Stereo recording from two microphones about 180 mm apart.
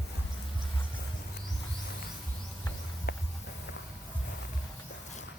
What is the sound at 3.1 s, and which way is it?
Music, 60° left (ahead or behind).